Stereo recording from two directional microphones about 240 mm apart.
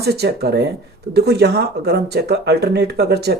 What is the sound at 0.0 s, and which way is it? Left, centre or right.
Speech, right.